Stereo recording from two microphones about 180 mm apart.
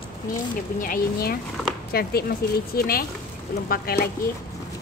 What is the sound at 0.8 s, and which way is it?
Speech, 55° left (ahead or behind).